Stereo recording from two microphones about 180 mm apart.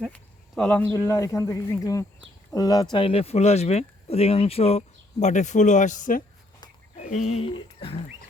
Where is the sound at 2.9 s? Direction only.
30° left (ahead or behind).